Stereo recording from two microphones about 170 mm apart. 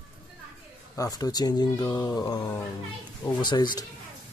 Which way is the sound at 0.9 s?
20° left (ahead or behind).